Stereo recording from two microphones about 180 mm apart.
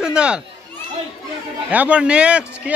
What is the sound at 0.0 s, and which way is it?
Children playing, 5° right (ahead or behind).